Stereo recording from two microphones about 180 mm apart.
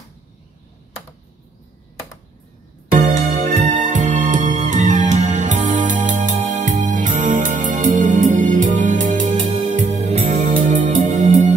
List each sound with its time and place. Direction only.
2.9 s music: 40° right (ahead or behind)